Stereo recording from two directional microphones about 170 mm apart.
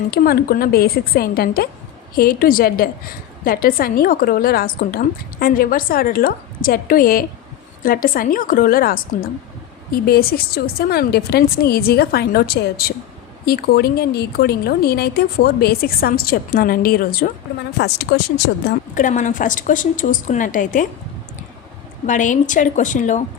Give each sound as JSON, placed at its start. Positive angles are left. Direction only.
{"t": 0.1, "sound": "a woman's voice", "side_deg": 60}
{"t": 17.7, "sound": "speech", "side_deg": 80}
{"t": 18.9, "sound": "a woman's voice", "side_deg": 50}
{"t": 22.0, "sound": "a woman's voice", "side_deg": 45}